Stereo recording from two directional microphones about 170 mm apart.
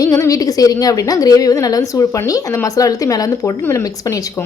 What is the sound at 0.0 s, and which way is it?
A woman's voice, 20° left (ahead or behind).